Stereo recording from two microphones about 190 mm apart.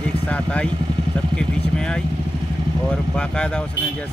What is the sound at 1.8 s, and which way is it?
Speech, 5° left (ahead or behind).